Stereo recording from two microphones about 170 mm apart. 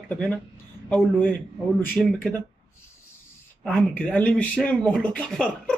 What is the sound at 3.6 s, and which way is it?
Speech, centre (ahead or behind).